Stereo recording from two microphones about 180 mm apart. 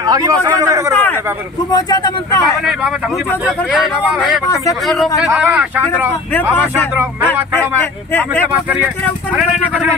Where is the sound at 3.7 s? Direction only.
Centre (ahead or behind).